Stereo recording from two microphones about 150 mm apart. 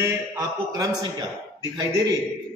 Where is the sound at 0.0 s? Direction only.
20° right (ahead or behind).